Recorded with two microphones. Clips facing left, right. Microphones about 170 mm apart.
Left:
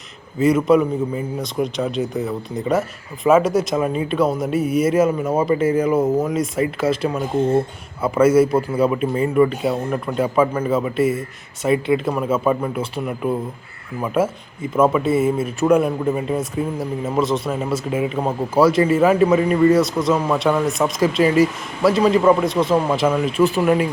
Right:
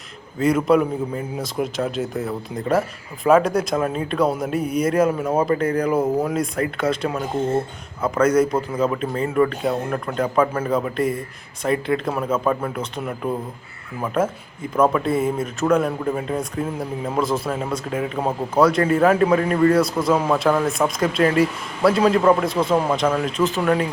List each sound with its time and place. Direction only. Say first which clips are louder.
0.3 s a man's voice: left 2 dB; centre (ahead or behind)